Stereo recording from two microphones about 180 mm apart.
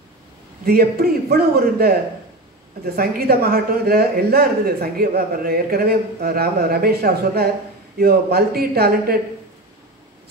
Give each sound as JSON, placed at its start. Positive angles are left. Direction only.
{"t": 0.7, "sound": "a man's voice", "side_deg": -60}